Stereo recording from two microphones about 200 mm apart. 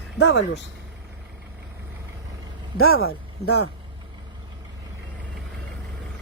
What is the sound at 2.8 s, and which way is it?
Speech, 90° left.